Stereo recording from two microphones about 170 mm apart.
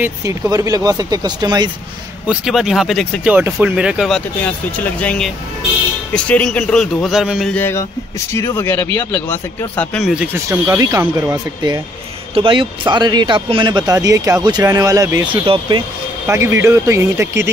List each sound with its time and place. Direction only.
0.0 s speech: 20° right (ahead or behind)
2.2 s a man's voice: centre (ahead or behind)
4.4 s a man's voice: 10° left (ahead or behind)
7.5 s speech: 10° left (ahead or behind)
9.9 s speech: 5° right (ahead or behind)
15.4 s speech: 30° right (ahead or behind)
16.3 s speech: 15° right (ahead or behind)